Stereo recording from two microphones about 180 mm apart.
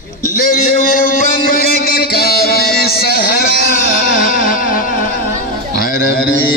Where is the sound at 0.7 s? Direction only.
50° left (ahead or behind).